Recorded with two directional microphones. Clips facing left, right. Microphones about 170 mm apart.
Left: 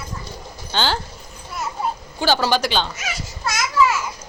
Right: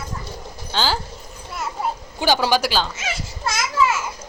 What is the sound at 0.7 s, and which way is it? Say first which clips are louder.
Speech: left 1 dB; centre (ahead or behind).